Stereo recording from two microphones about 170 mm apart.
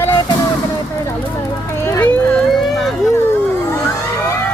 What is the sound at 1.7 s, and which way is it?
Speech, 15° left (ahead or behind).